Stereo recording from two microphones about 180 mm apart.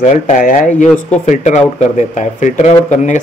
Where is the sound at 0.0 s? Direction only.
45° left (ahead or behind).